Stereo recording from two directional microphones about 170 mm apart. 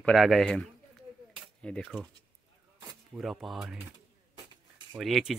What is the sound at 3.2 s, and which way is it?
Speech, centre (ahead or behind).